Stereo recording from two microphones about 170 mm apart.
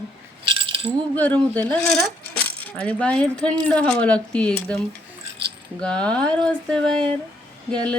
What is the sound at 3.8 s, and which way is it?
Speech, 10° left (ahead or behind).